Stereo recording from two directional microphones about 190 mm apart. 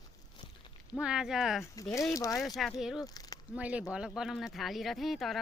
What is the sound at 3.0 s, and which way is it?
Speech, 20° left (ahead or behind).